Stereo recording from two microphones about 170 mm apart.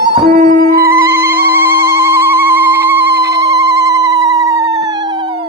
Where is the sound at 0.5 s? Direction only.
60° right (ahead or behind).